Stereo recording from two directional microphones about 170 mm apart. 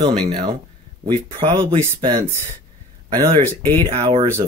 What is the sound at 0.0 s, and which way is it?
Speech, 25° right (ahead or behind).